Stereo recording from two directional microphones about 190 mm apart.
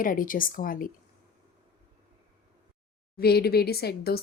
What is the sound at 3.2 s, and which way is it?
A woman's voice, 55° left (ahead or behind).